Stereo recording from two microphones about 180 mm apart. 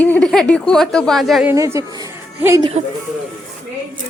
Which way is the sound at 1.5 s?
15° right (ahead or behind).